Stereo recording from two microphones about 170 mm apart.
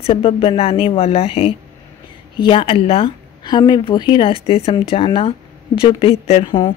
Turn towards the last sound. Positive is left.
turn(degrees=25)  # may be behind; listen again after turning